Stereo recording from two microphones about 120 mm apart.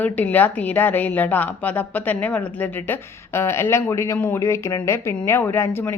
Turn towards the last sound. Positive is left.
turn(degrees=20)  # may be behind; listen again after turning